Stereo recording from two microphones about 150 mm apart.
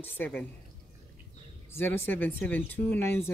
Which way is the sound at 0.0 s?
10° left (ahead or behind).